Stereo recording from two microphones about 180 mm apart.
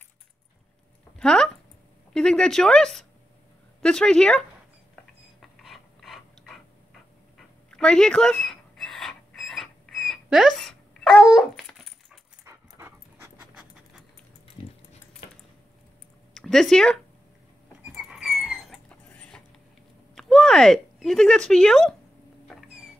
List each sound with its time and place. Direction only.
1.2 s speech: 5° left (ahead or behind)
5.4 s a sound: centre (ahead or behind)
12.4 s dog: 15° right (ahead or behind)
14.6 s dog: 30° left (ahead or behind)
16.3 s speech: centre (ahead or behind)
17.8 s a sound: centre (ahead or behind)
20.2 s speech: 5° left (ahead or behind)